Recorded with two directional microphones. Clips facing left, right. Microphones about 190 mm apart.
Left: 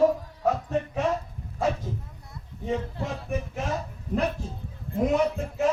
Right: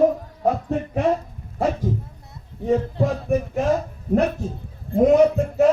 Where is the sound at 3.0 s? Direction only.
45° right (ahead or behind).